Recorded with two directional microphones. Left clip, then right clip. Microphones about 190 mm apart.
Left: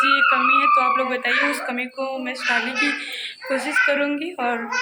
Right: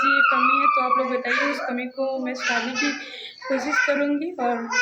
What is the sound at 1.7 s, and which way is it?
Speech, 10° right (ahead or behind).